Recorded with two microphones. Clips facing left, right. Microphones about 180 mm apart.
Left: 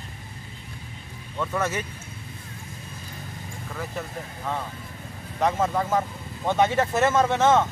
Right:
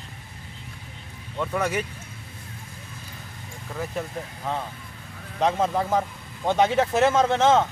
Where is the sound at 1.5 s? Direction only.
15° right (ahead or behind).